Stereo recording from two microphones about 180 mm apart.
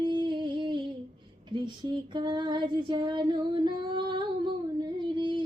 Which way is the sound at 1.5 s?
25° right (ahead or behind).